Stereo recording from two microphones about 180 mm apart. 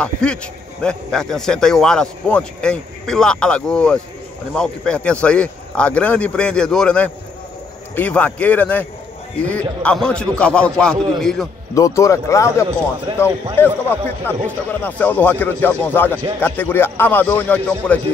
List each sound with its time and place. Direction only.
0.0 s a man's voice: 5° left (ahead or behind)
11.7 s speech: 15° left (ahead or behind)